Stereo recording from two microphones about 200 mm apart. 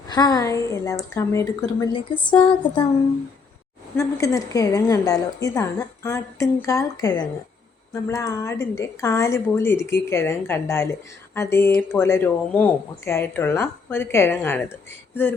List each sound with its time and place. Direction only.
0.1 s a woman's voice: 20° left (ahead or behind)
2.4 s a sound: 25° left (ahead or behind)
3.9 s a woman's voice: 15° left (ahead or behind)